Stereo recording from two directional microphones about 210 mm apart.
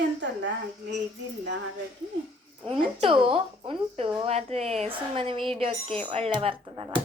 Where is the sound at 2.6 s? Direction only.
25° right (ahead or behind).